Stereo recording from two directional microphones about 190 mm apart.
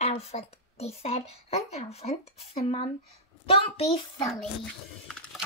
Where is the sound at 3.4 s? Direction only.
30° left (ahead or behind).